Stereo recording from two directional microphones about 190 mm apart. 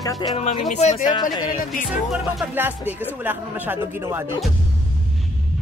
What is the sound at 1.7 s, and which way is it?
Music, 5° right (ahead or behind).